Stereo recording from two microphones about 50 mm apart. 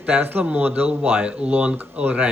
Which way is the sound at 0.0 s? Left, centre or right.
Right.